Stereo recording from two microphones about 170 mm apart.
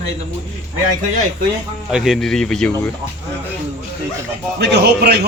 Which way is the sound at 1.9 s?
Centre (ahead or behind).